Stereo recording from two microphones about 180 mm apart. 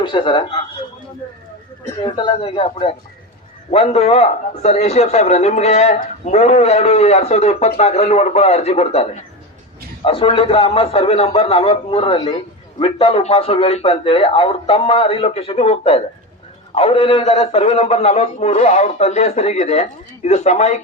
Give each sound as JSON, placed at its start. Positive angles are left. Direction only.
{"t": 0.0, "sound": "speech", "side_deg": 25}
{"t": 2.0, "sound": "a man's voice", "side_deg": 25}